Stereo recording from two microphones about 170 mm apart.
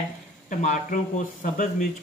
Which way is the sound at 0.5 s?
45° left (ahead or behind).